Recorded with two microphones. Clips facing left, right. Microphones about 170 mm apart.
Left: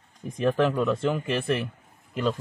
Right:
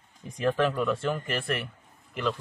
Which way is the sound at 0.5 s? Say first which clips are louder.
Left 3 dB; 20° left (ahead or behind).